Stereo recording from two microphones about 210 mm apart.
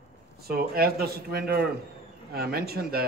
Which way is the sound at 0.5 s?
45° right (ahead or behind).